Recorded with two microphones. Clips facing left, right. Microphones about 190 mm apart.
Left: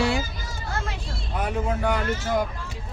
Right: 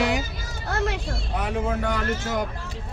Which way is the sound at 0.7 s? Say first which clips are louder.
Right 7 dB; 70° right (ahead or behind).